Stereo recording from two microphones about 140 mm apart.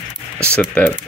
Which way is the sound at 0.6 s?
10° left (ahead or behind).